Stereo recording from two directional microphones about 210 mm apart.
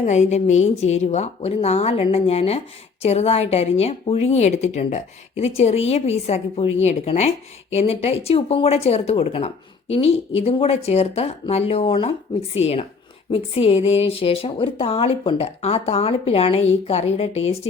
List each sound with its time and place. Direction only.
0.0 s a woman's voice: 35° left (ahead or behind)